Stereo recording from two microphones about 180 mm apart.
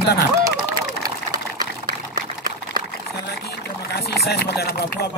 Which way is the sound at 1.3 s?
50° right (ahead or behind).